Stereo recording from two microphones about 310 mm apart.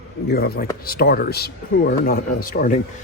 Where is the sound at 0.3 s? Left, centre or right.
Left.